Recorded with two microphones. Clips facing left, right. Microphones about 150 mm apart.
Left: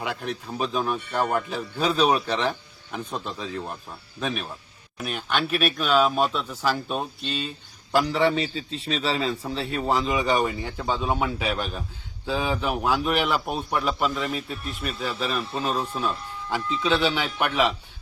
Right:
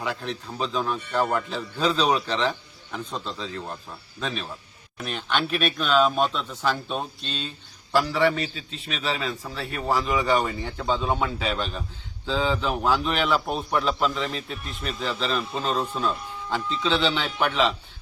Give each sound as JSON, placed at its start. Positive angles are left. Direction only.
{"t": 0.0, "sound": "a man's voice", "side_deg": 15}
{"t": 7.9, "sound": "a man's voice", "side_deg": 20}